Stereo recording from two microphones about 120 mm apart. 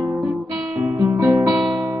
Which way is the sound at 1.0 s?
30° right (ahead or behind).